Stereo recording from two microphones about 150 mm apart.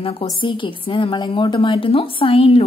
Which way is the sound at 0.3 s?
35° left (ahead or behind).